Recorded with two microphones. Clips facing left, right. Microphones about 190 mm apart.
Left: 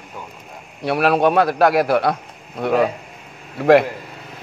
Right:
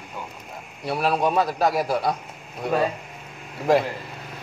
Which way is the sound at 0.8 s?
70° left (ahead or behind).